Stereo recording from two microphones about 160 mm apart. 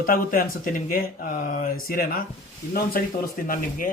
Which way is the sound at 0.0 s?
65° left (ahead or behind).